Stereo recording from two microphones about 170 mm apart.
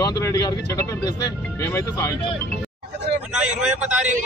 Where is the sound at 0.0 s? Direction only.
20° left (ahead or behind).